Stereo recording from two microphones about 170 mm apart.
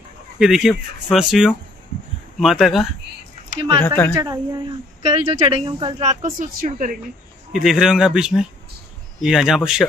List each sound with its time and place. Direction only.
0.4 s speech: 5° right (ahead or behind)
3.5 s a woman's voice: 30° right (ahead or behind)
3.8 s speech: 10° left (ahead or behind)
4.1 s a woman's voice: 20° right (ahead or behind)
5.0 s speech: 35° right (ahead or behind)
6.0 s speech: 45° right (ahead or behind)
7.5 s speech: 5° right (ahead or behind)